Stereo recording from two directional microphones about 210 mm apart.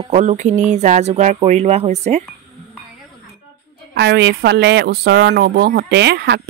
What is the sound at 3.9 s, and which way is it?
Speech, 55° right (ahead or behind).